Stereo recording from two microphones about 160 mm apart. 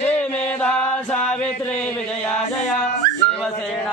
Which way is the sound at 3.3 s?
5° left (ahead or behind).